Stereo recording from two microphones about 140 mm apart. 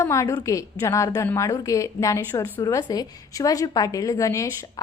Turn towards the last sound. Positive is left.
turn(degrees=25)  # may be behind; listen again after turning